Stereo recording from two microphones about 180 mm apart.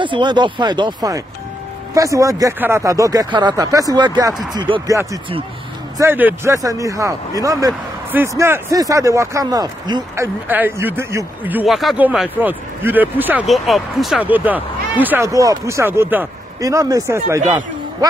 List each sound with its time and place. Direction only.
0.0 s speech: 25° right (ahead or behind)
5.9 s speech: 10° right (ahead or behind)